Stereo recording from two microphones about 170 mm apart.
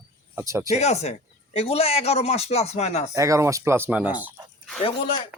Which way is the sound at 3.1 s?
20° right (ahead or behind).